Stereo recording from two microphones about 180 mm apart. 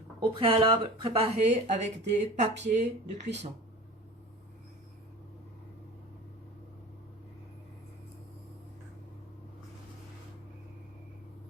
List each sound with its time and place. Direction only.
0.2 s speech: 30° right (ahead or behind)